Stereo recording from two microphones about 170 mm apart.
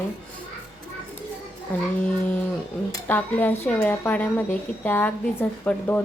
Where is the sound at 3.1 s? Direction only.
10° left (ahead or behind).